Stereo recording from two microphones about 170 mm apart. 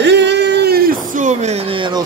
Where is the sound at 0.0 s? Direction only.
90° right.